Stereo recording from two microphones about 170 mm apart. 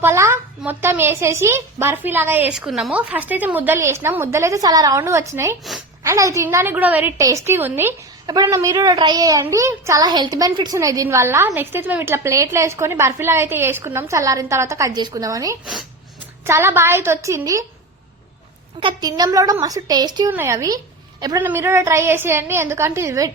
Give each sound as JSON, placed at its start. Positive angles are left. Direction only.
{"t": 0.0, "sound": "a woman's voice", "side_deg": -15}
{"t": 15.6, "sound": "speech", "side_deg": 0}
{"t": 16.5, "sound": "a woman's voice", "side_deg": -15}
{"t": 18.8, "sound": "a child's voice", "side_deg": -25}